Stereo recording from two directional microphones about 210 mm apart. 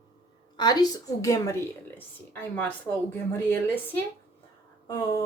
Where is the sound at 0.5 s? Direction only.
20° left (ahead or behind).